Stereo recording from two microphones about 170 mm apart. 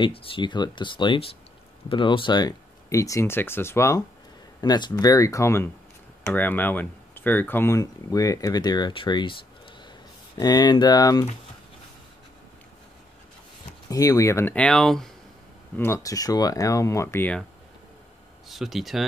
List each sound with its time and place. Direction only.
0.0 s speech: 30° left (ahead or behind)
13.8 s speech: 20° left (ahead or behind); by 15.0 s 5° left (ahead or behind)
15.8 s speech: 15° left (ahead or behind)
18.5 s speech: centre (ahead or behind)